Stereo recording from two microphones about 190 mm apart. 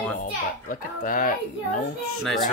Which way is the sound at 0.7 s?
45° left (ahead or behind).